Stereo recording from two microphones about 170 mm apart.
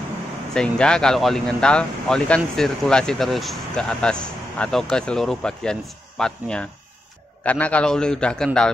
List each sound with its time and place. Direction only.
0.6 s speech: 5° left (ahead or behind)